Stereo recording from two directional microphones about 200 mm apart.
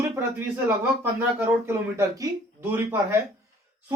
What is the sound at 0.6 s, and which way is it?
Speech, 10° right (ahead or behind).